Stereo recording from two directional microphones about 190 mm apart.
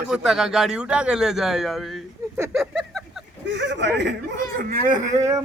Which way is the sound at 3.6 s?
65° right (ahead or behind).